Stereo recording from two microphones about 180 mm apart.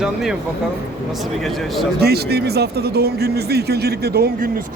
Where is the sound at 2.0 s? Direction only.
60° right (ahead or behind).